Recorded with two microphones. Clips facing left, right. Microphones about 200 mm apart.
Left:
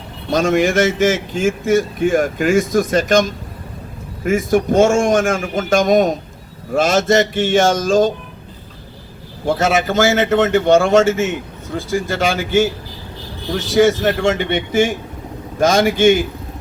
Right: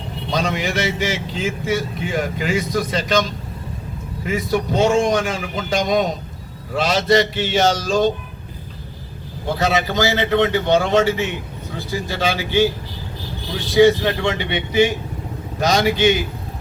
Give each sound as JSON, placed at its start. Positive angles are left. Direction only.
{"t": 0.3, "sound": "speech", "side_deg": 50}
{"t": 9.5, "sound": "speech", "side_deg": 50}
{"t": 13.7, "sound": "speech", "side_deg": 45}